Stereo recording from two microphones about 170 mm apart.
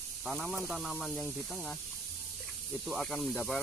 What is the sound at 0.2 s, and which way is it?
Speech, centre (ahead or behind).